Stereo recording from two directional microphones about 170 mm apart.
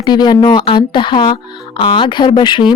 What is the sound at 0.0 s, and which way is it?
Speech, 25° left (ahead or behind).